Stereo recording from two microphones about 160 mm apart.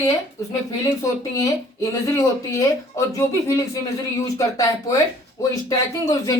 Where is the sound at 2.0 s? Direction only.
20° left (ahead or behind).